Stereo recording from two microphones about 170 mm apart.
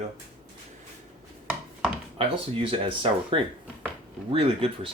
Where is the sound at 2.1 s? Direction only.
30° right (ahead or behind).